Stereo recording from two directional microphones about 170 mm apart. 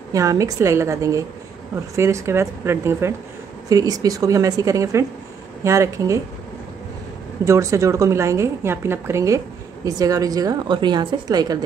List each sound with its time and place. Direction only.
0.1 s a woman's voice: 20° right (ahead or behind)
7.4 s a woman's voice: 15° right (ahead or behind)